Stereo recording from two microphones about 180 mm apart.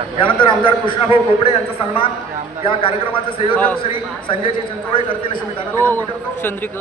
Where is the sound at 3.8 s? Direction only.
30° left (ahead or behind).